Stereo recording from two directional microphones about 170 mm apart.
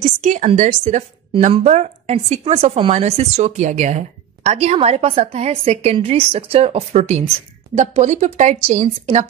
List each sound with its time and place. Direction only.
0.2 s a woman's voice: 50° right (ahead or behind)